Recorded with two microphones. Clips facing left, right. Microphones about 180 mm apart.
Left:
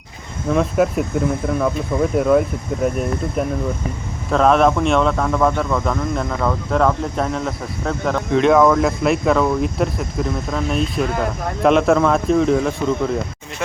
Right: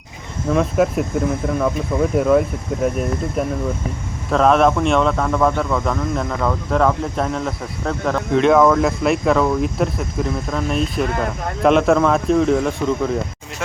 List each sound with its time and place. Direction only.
0.4 s a man's voice: centre (ahead or behind)